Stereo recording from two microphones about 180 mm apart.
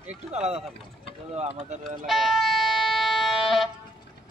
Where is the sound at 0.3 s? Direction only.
35° right (ahead or behind).